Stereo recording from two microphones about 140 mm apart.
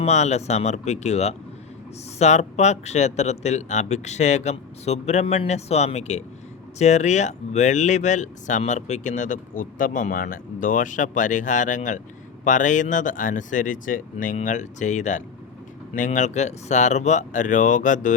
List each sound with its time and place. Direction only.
0.0 s speech: 55° left (ahead or behind); by 14.3 s 75° left (ahead or behind)
14.4 s speech: 60° left (ahead or behind)